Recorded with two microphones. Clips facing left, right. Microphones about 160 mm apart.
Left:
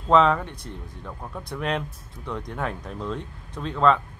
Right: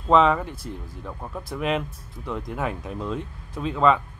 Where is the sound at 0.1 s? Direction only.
5° right (ahead or behind).